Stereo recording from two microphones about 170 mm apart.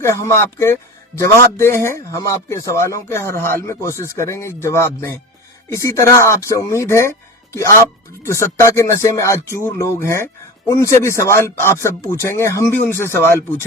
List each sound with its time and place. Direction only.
0.0 s speech: 15° left (ahead or behind)